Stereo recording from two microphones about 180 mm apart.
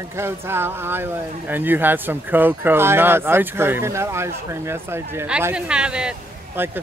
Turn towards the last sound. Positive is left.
turn(degrees=-10)  # may be behind; listen again after turning